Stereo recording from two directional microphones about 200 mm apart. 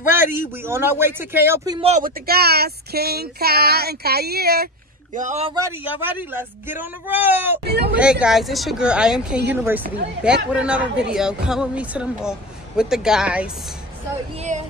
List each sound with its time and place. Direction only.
0.1 s a man's voice: 10° right (ahead or behind)
1.8 s speech: 35° right (ahead or behind); by 4.6 s 50° right (ahead or behind)
5.1 s speech: 35° right (ahead or behind)
5.5 s a man's voice: 15° right (ahead or behind)
7.6 s speech: 55° right (ahead or behind)
8.0 s a woman's voice: 5° right (ahead or behind)
14.3 s speech: 35° right (ahead or behind)